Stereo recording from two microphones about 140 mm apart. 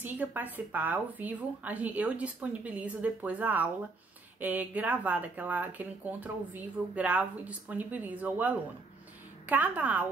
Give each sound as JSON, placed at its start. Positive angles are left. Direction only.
{"t": 0.0, "sound": "speech", "side_deg": -10}